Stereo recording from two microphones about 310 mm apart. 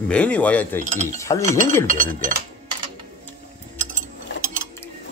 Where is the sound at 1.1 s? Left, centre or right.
Centre.